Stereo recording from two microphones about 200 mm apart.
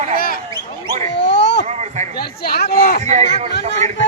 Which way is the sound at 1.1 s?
60° left (ahead or behind).